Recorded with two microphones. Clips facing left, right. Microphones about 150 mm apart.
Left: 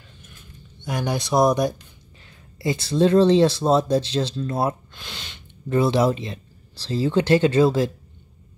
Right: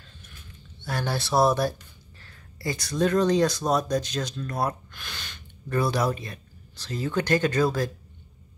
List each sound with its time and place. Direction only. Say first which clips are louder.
0.8 s speech: left 4 dB; 15° left (ahead or behind)